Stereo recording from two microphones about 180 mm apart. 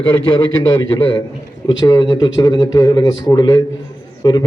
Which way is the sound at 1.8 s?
20° left (ahead or behind).